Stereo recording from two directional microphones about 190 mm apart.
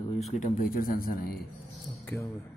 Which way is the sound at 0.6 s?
50° left (ahead or behind).